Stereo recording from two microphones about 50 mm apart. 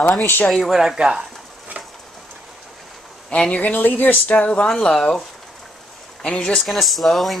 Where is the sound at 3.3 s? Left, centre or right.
Left.